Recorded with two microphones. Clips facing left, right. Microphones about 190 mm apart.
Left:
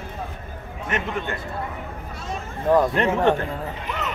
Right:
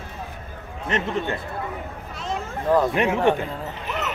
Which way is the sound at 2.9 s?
10° right (ahead or behind).